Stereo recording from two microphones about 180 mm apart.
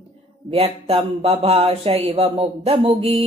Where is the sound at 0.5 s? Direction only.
35° right (ahead or behind).